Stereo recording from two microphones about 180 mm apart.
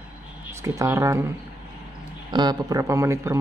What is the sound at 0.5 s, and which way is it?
Speech, 15° right (ahead or behind).